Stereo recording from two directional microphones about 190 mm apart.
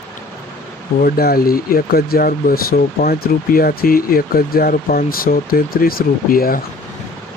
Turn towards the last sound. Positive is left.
turn(degrees=50)  # may be behind; listen again after turning